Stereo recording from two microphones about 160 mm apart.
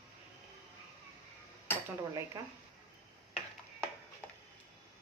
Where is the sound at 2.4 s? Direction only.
20° right (ahead or behind).